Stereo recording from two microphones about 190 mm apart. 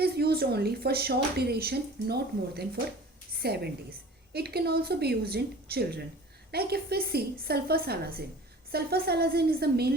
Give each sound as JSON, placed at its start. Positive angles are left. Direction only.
{"t": 0.0, "sound": "a woman's voice", "side_deg": -55}